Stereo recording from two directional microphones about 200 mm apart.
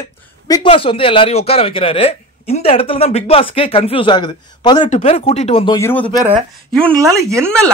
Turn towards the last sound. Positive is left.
turn(degrees=-15)  # may be behind; listen again after turning